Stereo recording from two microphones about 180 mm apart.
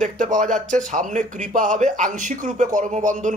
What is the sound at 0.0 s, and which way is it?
Speech, 45° right (ahead or behind).